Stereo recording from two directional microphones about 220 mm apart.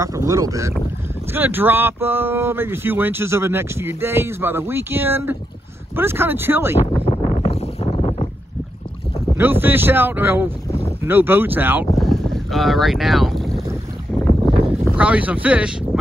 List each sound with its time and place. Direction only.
0.0 s speech: 15° right (ahead or behind)
6.8 s a sound: 30° left (ahead or behind)
9.4 s speech: 10° right (ahead or behind)
12.0 s boat: centre (ahead or behind)
15.0 s speech: 5° right (ahead or behind)